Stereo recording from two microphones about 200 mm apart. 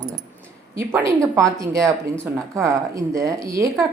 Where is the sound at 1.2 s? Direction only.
15° right (ahead or behind).